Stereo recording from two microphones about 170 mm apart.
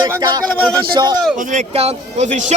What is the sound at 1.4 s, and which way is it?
A man's voice, 50° right (ahead or behind).